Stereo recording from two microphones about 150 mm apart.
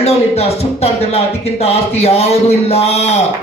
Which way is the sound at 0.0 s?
45° left (ahead or behind).